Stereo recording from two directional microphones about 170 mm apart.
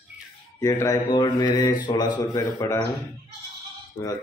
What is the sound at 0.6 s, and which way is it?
Speech, 15° left (ahead or behind).